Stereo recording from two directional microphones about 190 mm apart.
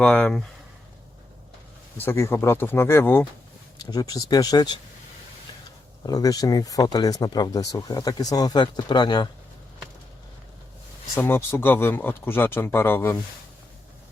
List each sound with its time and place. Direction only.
0.0 s speech: 10° left (ahead or behind)
2.0 s speech: 10° left (ahead or behind)
6.0 s speech: 20° left (ahead or behind)
11.2 s speech: 10° left (ahead or behind)